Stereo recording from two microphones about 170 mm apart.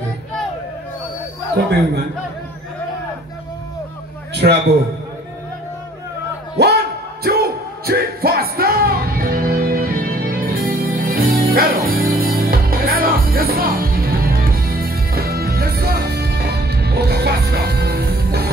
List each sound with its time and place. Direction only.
4.3 s a man's voice: 80° right
6.6 s music: 75° right (ahead or behind)
7.2 s music: 65° right (ahead or behind)